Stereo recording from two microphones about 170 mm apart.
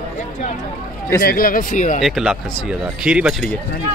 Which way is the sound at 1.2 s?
60° left (ahead or behind).